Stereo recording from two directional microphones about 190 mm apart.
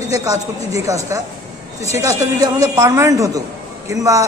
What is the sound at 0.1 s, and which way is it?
A man's voice, 15° right (ahead or behind).